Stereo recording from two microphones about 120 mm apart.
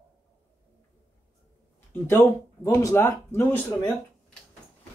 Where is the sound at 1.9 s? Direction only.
20° left (ahead or behind).